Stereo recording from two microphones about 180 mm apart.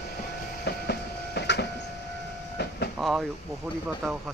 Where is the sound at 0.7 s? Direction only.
65° left (ahead or behind).